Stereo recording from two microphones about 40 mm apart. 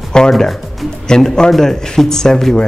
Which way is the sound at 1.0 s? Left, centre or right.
Centre.